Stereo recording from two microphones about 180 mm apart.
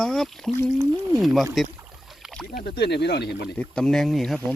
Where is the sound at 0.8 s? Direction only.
15° right (ahead or behind).